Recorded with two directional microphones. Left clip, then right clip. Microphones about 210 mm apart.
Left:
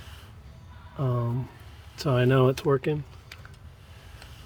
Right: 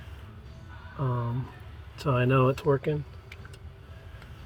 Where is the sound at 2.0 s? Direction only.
60° left (ahead or behind).